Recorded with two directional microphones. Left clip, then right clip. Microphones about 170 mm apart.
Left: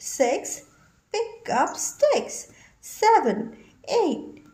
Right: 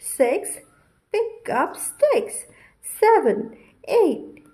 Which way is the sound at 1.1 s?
15° right (ahead or behind).